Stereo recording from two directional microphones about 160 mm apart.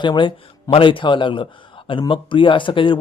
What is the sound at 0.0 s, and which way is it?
Speech, 30° left (ahead or behind).